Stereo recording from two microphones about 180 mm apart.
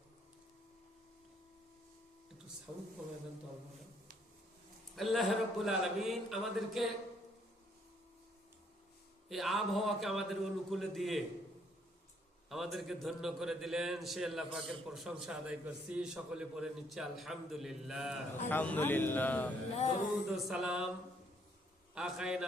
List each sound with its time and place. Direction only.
4.9 s a man's voice: centre (ahead or behind)
9.3 s a man's voice: centre (ahead or behind)
12.5 s a man's voice: centre (ahead or behind)
18.4 s a man's voice: 10° left (ahead or behind)
19.7 s male singing: 40° left (ahead or behind)
20.2 s a man's voice: centre (ahead or behind)
21.9 s a man's voice: 5° right (ahead or behind)